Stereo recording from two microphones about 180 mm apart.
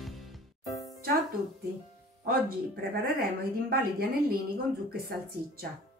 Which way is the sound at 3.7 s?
55° right (ahead or behind).